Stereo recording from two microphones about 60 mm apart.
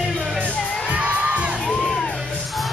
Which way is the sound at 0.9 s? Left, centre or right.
Right.